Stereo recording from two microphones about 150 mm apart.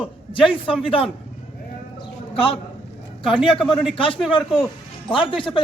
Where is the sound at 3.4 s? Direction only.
Centre (ahead or behind).